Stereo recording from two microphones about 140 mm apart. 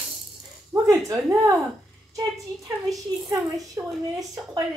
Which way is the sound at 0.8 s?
25° right (ahead or behind).